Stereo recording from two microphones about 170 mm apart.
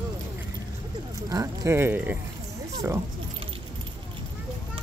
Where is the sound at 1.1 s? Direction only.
20° right (ahead or behind).